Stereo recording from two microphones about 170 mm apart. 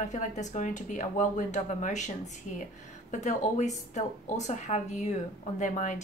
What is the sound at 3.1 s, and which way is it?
Speech, 45° left (ahead or behind).